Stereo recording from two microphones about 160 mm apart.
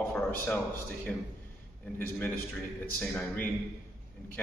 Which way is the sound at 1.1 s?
5° left (ahead or behind).